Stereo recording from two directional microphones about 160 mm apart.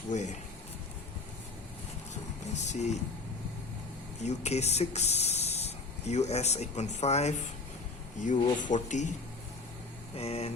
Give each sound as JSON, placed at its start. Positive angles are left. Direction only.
{"t": 0.1, "sound": "a man's voice", "side_deg": 45}
{"t": 2.6, "sound": "a sound", "side_deg": 45}
{"t": 4.2, "sound": "a man's voice", "side_deg": 45}
{"t": 10.2, "sound": "speech", "side_deg": 40}